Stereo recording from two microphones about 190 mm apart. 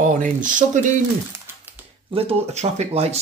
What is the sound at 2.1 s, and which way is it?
Speech, 30° right (ahead or behind).